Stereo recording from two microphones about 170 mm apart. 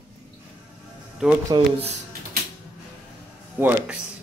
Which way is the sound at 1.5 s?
25° right (ahead or behind).